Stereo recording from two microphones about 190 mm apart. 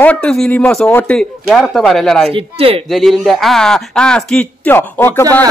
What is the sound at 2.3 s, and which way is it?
Speech, 30° right (ahead or behind).